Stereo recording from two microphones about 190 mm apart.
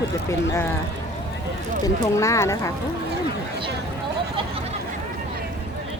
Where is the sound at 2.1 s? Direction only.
15° left (ahead or behind).